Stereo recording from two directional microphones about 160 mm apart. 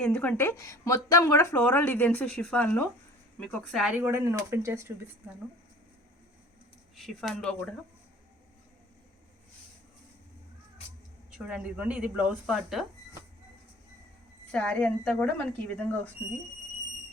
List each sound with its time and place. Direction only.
0.0 s speech: 10° left (ahead or behind)
4.0 s speech: 15° right (ahead or behind)
6.9 s speech: centre (ahead or behind)
11.3 s speech: 5° right (ahead or behind)
14.5 s speech: 5° left (ahead or behind)